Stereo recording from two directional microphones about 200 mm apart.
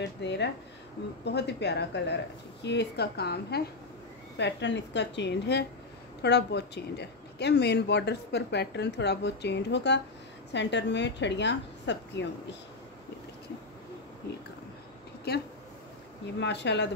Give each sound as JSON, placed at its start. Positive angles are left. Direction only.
{"t": 0.0, "sound": "speech", "side_deg": 60}
{"t": 15.3, "sound": "speech", "side_deg": 55}